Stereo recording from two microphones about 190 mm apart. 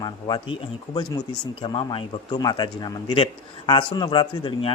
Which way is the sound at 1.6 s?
25° left (ahead or behind).